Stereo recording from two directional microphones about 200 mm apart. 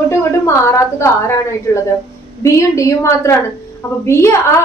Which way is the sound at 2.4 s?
15° left (ahead or behind).